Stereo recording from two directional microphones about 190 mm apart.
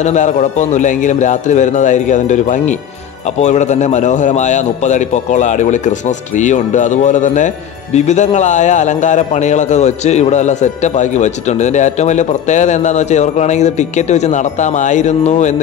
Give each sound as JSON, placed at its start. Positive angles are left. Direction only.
{"t": 0.0, "sound": "a man's voice", "side_deg": 40}